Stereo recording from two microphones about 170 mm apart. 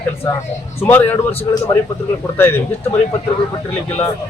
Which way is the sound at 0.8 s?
10° left (ahead or behind).